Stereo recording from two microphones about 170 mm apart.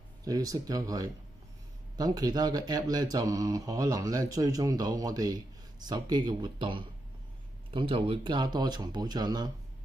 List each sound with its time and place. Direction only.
0.2 s speech: 20° right (ahead or behind)